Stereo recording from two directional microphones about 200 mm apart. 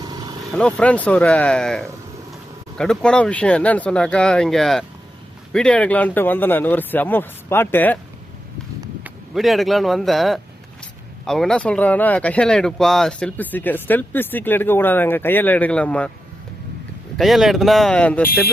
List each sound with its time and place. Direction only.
0.0 s vehicle: 20° right (ahead or behind)
0.5 s speech: 5° left (ahead or behind)
9.0 s speech: centre (ahead or behind)
17.2 s speech: centre (ahead or behind)